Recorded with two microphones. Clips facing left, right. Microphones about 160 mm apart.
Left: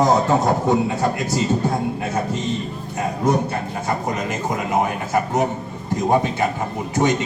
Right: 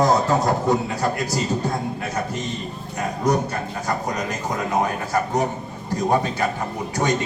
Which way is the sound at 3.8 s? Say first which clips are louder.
Left 1 dB; 20° left (ahead or behind).